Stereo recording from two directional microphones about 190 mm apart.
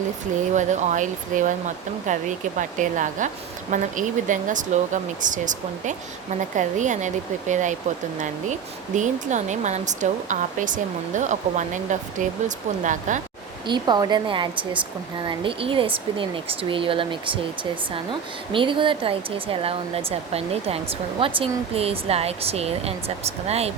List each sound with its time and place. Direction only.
0.5 s speech: 40° right (ahead or behind)
9.0 s speech: 40° right (ahead or behind)
13.7 s speech: 20° right (ahead or behind)